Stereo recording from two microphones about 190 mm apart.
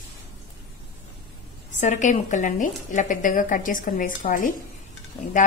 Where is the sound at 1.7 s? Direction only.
40° left (ahead or behind).